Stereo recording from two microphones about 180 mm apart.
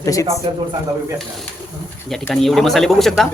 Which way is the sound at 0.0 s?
20° left (ahead or behind).